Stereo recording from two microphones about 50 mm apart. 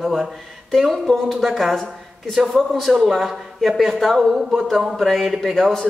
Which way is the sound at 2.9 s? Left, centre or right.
Centre.